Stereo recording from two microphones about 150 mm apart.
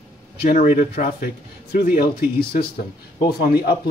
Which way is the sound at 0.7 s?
65° left (ahead or behind).